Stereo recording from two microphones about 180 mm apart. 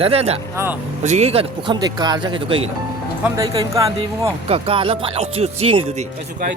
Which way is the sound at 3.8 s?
25° right (ahead or behind).